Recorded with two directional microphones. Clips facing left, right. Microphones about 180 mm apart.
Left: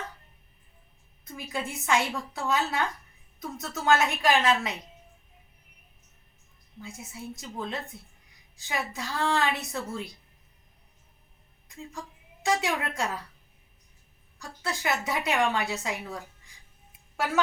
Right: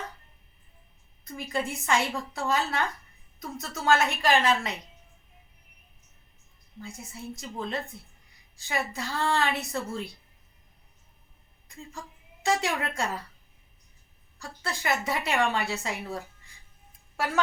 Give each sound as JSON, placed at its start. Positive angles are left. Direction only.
{"t": 1.3, "sound": "a woman's voice", "side_deg": 0}
{"t": 6.7, "sound": "a woman's voice", "side_deg": 0}
{"t": 11.7, "sound": "a woman's voice", "side_deg": 0}
{"t": 14.3, "sound": "a woman's voice", "side_deg": 0}